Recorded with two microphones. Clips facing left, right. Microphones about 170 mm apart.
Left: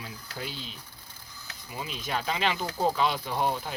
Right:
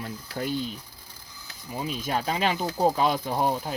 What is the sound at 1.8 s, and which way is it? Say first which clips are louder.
Speech: right 4 dB; 45° right (ahead or behind).